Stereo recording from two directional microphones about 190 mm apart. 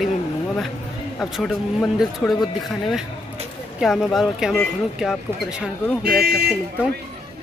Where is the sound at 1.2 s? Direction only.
Centre (ahead or behind).